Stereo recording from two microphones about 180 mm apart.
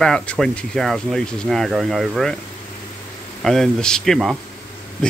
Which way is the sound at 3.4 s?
Centre (ahead or behind).